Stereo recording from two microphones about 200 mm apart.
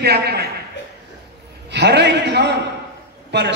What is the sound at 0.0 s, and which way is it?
Speech, 55° right (ahead or behind).